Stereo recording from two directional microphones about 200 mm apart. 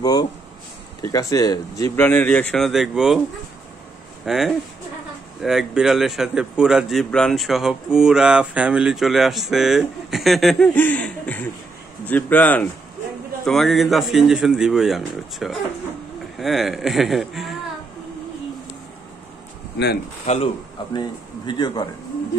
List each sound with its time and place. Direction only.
0.0 s a sound: 20° left (ahead or behind)
1.0 s speech: 20° left (ahead or behind); by 3.2 s centre (ahead or behind)
4.2 s a man's voice: centre (ahead or behind)
20.3 s a man's voice: 35° left (ahead or behind)
20.9 s a man's voice: 20° left (ahead or behind)